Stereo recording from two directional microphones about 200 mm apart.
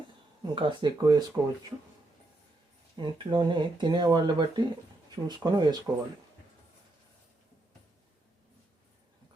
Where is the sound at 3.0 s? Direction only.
20° right (ahead or behind).